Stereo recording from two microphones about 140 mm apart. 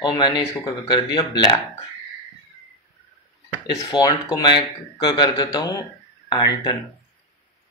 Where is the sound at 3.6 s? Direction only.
30° left (ahead or behind).